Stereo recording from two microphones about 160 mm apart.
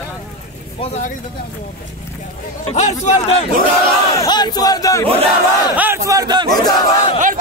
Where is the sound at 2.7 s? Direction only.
45° left (ahead or behind).